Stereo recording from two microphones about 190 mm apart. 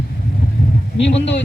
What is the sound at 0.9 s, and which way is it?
Speech, 70° left (ahead or behind).